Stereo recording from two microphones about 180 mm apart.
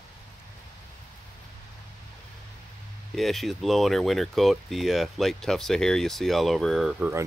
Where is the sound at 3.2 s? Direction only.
Centre (ahead or behind).